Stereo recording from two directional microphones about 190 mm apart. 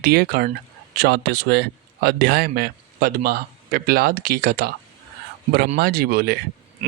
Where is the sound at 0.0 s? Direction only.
55° right (ahead or behind).